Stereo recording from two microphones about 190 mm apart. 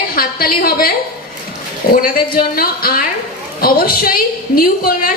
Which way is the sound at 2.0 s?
50° left (ahead or behind).